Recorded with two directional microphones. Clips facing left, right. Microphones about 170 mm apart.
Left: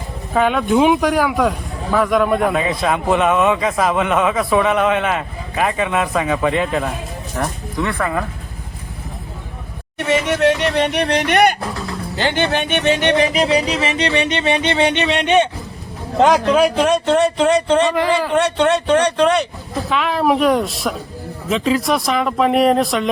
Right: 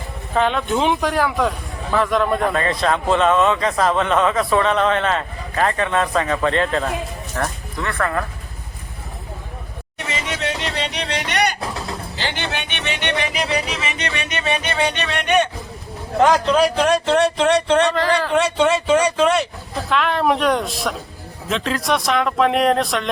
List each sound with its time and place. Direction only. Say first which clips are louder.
0.3 s a man's voice: left 4 dB; 5° left (ahead or behind)
10.1 s speech: left 10 dB; 55° left (ahead or behind)
12.1 s music: left 10 dB; 50° left (ahead or behind); by 15.4 s 25° left (ahead or behind)
16.1 s a man's voice: left 2 dB; 20° left (ahead or behind)
16.5 s speech: left 2 dB; 5° left (ahead or behind)